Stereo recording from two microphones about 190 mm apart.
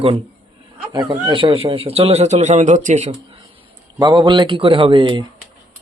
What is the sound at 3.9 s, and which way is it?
A man's voice, 20° right (ahead or behind).